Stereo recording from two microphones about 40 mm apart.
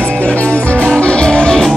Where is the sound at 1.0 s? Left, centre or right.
Left.